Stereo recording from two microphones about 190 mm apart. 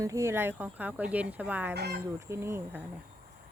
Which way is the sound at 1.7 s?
60° right (ahead or behind).